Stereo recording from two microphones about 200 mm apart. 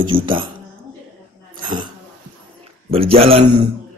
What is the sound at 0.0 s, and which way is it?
Burping, 25° right (ahead or behind).